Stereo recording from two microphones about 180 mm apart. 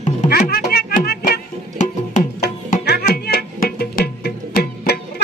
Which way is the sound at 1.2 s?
45° left (ahead or behind).